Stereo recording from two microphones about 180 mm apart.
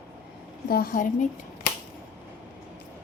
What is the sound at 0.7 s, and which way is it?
Speech, 55° left (ahead or behind).